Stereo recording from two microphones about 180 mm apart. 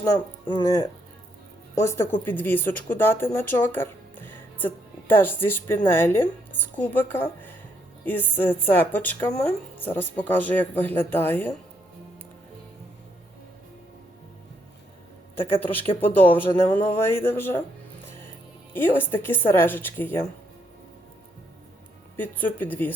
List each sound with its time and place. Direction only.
0.4 s speech: 20° left (ahead or behind)
15.4 s speech: 30° left (ahead or behind)
16.6 s speech: 10° left (ahead or behind)
18.7 s speech: 10° left (ahead or behind)
22.2 s speech: 10° left (ahead or behind)